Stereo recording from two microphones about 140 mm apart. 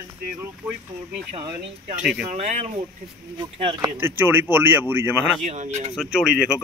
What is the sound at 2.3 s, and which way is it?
Speech, 55° right (ahead or behind).